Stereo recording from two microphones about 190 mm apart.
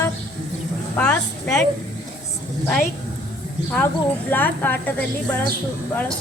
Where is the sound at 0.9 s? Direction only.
5° left (ahead or behind).